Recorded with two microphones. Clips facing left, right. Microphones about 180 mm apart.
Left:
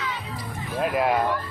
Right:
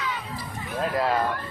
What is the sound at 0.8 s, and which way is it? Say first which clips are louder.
Speech: left 2 dB; 15° left (ahead or behind).